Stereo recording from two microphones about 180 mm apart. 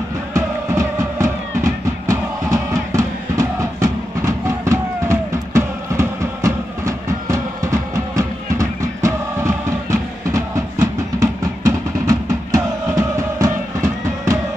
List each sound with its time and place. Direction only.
0.3 s music: 15° right (ahead or behind)